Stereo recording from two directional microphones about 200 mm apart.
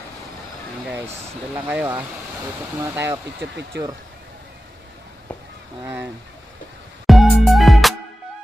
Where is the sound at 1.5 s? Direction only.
10° right (ahead or behind).